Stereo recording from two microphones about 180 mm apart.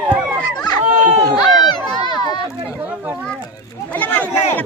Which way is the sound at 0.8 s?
40° right (ahead or behind).